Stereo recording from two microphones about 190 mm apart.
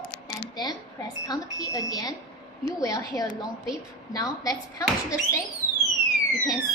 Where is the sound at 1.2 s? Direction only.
20° left (ahead or behind).